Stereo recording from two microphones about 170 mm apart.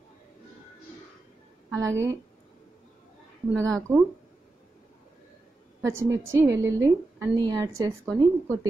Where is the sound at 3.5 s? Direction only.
15° right (ahead or behind).